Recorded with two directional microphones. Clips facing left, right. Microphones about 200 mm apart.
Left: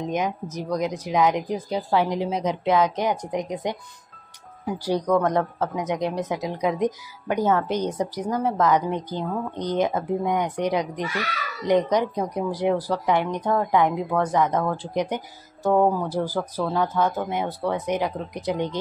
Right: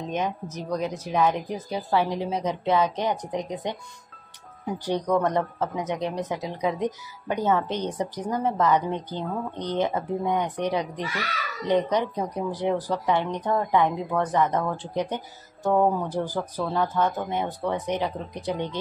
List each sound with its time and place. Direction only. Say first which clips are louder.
0.1 s speech: left 2 dB; 10° left (ahead or behind)
5.2 s speech: left 2 dB; 10° left (ahead or behind)